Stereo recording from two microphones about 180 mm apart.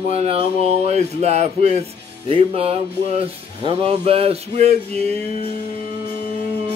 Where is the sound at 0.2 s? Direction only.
35° right (ahead or behind).